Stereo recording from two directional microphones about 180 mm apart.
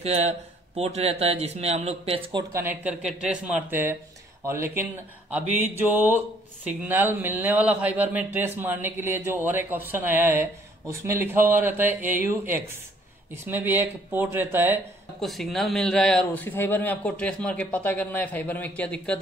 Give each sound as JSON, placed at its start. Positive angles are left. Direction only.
{"t": 0.0, "sound": "a man's voice", "side_deg": -35}
{"t": 2.5, "sound": "a man's voice", "side_deg": -10}
{"t": 5.9, "sound": "a man's voice", "side_deg": -10}
{"t": 15.1, "sound": "a man's voice", "side_deg": 0}